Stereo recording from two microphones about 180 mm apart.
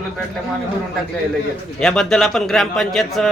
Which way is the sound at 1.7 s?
5° left (ahead or behind).